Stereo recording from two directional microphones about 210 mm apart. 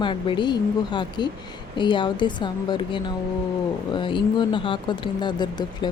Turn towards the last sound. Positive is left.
turn(degrees=20)  # may be behind; listen again after turning